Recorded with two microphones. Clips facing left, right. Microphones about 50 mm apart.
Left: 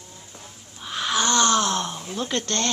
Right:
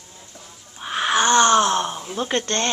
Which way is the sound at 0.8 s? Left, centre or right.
Right.